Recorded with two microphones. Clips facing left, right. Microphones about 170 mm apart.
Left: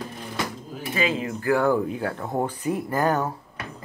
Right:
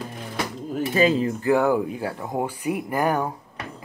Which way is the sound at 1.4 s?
15° right (ahead or behind).